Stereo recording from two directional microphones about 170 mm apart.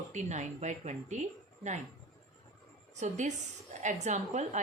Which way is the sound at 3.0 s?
45° right (ahead or behind).